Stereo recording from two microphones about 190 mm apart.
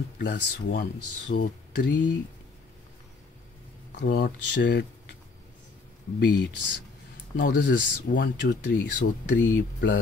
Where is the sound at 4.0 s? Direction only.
50° left (ahead or behind); by 4.9 s 65° left (ahead or behind).